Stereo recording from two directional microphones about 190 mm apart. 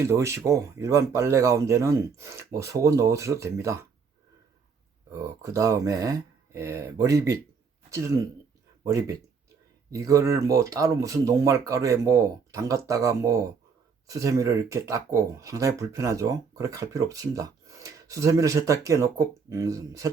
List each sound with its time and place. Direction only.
0.0 s speech: 15° right (ahead or behind)
5.1 s speech: 15° right (ahead or behind)